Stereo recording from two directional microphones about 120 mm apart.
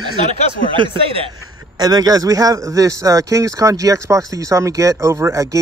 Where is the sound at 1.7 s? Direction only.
30° right (ahead or behind).